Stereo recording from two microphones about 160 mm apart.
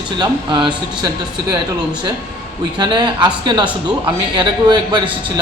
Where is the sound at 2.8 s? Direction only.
30° right (ahead or behind).